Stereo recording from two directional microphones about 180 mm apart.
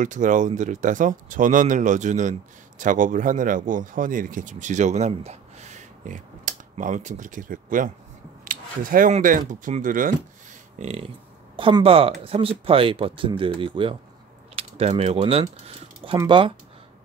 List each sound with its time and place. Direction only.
0.0 s speech: 45° right (ahead or behind)
10.8 s speech: 35° right (ahead or behind)